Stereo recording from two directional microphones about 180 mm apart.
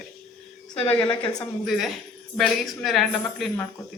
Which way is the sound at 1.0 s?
25° left (ahead or behind).